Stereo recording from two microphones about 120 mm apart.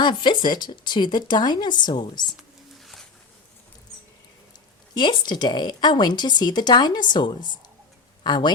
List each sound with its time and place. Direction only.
0.0 s speech: 40° left (ahead or behind)
2.8 s a sound: centre (ahead or behind)
4.9 s speech: 40° left (ahead or behind)